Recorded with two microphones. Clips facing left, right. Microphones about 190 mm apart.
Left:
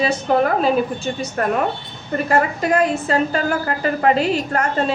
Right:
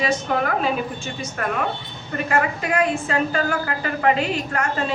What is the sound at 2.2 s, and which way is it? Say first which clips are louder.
A woman's voice: left 4 dB; 40° left (ahead or behind).